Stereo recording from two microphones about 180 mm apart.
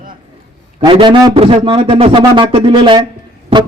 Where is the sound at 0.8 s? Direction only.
25° right (ahead or behind).